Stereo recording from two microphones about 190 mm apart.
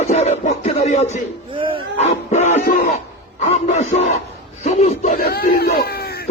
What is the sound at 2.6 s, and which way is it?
Speech, 50° left (ahead or behind).